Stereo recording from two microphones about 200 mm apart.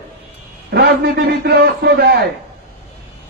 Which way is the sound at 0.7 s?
55° right (ahead or behind).